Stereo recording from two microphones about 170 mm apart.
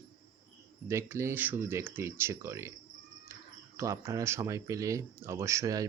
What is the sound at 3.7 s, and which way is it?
Speech, 15° right (ahead or behind).